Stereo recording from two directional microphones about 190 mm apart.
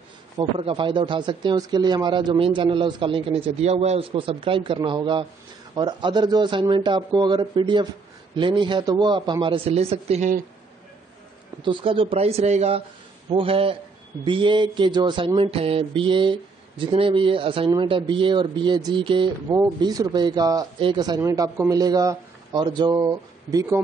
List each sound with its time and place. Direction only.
0.4 s speech: 30° right (ahead or behind)
11.6 s speech: 25° right (ahead or behind)